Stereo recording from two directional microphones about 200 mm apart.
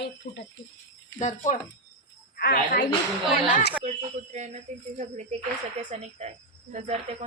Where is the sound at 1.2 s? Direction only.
35° left (ahead or behind).